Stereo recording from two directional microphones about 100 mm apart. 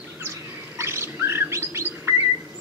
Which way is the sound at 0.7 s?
25° right (ahead or behind).